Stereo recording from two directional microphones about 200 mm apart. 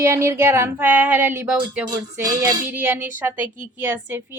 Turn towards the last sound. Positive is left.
turn(degrees=-10)  # may be behind; listen again after turning